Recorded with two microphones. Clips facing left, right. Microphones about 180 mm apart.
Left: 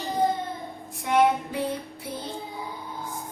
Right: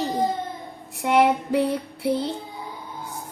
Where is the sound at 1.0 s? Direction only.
70° right (ahead or behind).